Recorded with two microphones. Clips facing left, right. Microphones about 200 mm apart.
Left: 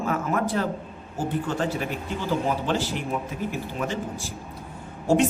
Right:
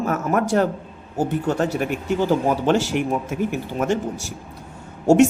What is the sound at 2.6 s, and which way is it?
Speech, 75° right (ahead or behind).